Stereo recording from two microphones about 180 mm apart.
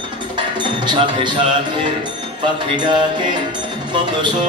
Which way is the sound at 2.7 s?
25° right (ahead or behind).